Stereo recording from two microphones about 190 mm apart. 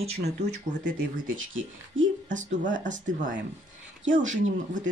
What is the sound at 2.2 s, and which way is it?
Speech, 40° right (ahead or behind).